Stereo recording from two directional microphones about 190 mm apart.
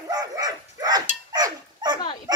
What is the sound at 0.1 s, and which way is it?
Dog, 20° right (ahead or behind).